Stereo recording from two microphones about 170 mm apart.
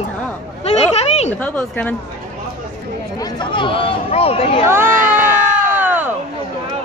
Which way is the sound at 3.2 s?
25° left (ahead or behind).